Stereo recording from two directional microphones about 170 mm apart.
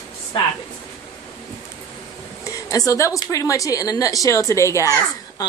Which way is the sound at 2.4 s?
20° left (ahead or behind).